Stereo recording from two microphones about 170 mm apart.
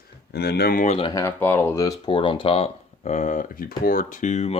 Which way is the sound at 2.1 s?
30° left (ahead or behind).